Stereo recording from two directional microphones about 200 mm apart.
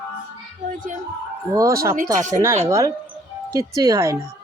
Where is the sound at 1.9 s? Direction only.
40° right (ahead or behind).